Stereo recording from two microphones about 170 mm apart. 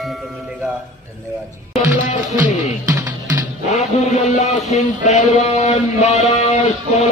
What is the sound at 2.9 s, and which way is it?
Music, 15° right (ahead or behind).